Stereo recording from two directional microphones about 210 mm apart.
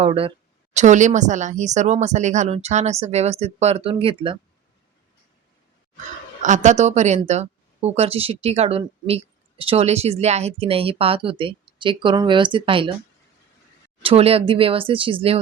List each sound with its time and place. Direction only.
0.0 s a woman's voice: 25° right (ahead or behind)
6.4 s a woman's voice: 35° right (ahead or behind)
14.0 s speech: 25° right (ahead or behind)